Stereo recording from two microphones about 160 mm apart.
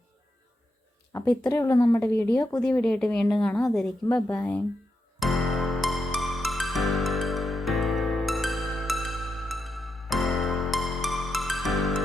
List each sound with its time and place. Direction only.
1.1 s speech: 20° left (ahead or behind)
5.2 s music: centre (ahead or behind)